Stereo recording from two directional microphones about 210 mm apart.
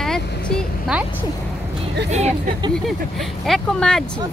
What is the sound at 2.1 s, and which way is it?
Speech, 35° right (ahead or behind).